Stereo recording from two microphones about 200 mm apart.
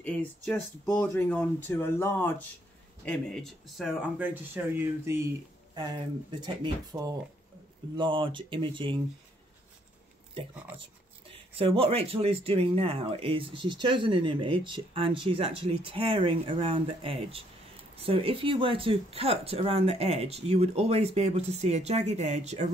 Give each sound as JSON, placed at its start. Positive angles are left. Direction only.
{"t": 0.0, "sound": "speech", "side_deg": 10}
{"t": 6.4, "sound": "speech", "side_deg": -20}
{"t": 11.2, "sound": "speech", "side_deg": -25}